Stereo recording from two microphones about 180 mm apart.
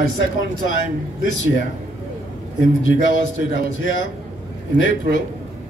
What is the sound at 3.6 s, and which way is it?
A man's voice, 90° left.